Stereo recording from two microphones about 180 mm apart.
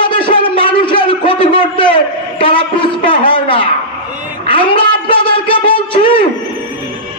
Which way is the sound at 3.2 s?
25° left (ahead or behind).